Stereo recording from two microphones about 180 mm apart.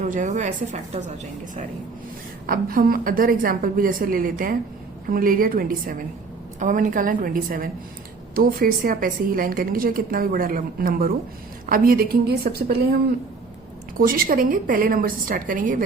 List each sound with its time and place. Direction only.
0.0 s a woman's voice: 45° right (ahead or behind)
2.5 s a woman's voice: 55° right (ahead or behind)
14.0 s a woman's voice: 50° right (ahead or behind)